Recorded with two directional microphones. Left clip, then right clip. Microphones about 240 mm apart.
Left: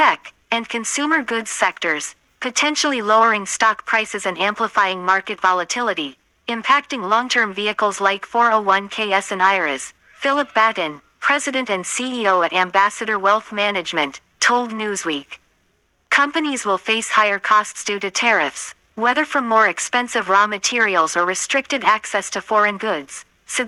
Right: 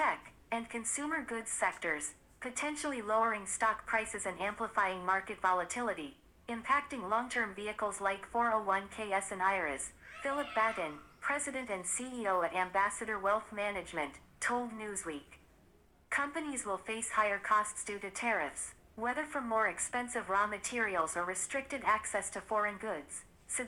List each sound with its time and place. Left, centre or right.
0.0 s speech: left